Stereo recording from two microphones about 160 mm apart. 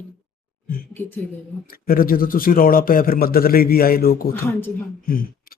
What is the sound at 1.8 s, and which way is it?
A man's voice, 65° left (ahead or behind).